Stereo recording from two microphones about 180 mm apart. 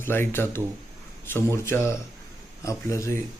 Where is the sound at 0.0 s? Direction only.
15° left (ahead or behind).